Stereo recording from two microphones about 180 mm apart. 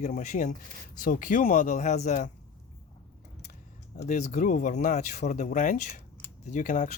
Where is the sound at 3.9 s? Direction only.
40° left (ahead or behind).